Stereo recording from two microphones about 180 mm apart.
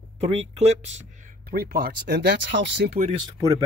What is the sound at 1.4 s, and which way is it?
Speech, 55° right (ahead or behind).